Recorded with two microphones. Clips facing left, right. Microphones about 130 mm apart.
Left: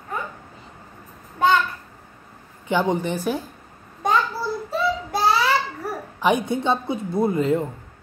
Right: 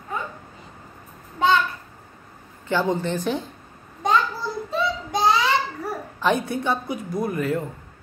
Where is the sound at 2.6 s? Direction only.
15° left (ahead or behind).